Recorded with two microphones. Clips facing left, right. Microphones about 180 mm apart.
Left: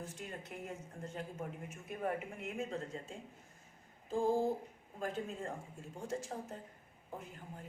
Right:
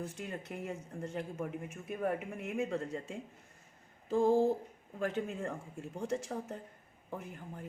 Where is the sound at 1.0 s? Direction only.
65° right (ahead or behind).